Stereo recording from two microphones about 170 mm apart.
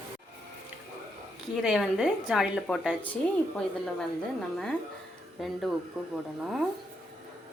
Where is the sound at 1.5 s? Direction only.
Centre (ahead or behind).